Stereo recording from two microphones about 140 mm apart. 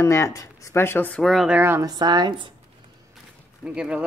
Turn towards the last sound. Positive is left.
turn(degrees=-10)  # may be behind; listen again after turning